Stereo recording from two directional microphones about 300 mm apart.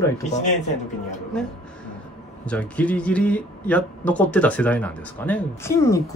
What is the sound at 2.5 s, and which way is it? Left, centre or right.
Speech, centre.